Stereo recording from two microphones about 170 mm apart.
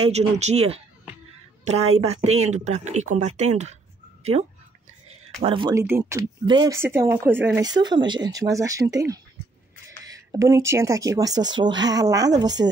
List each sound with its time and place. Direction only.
0.0 s speech: 40° right (ahead or behind)
5.8 s speech: 15° right (ahead or behind)
7.6 s speech: 25° right (ahead or behind)